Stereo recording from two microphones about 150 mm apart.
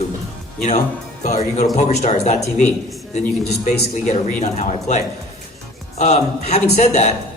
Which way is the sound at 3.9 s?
50° left (ahead or behind).